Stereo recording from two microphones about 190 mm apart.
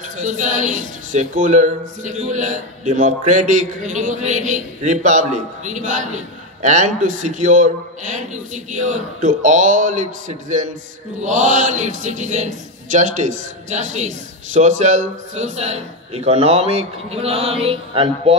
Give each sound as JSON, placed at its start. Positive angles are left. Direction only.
{"t": 0.2, "sound": "speech", "side_deg": -40}